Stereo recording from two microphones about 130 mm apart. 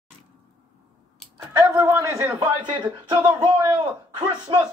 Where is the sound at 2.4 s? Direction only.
35° right (ahead or behind).